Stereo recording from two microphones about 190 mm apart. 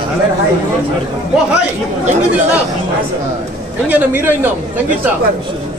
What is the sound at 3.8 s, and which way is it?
Speech, 10° right (ahead or behind).